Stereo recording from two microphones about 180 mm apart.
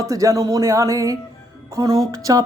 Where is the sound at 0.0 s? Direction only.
15° right (ahead or behind).